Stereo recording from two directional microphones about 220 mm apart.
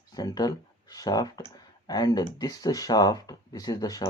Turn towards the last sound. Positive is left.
turn(degrees=15)  # may be behind; listen again after turning